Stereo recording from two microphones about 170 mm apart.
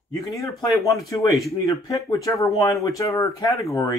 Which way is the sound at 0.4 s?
20° left (ahead or behind).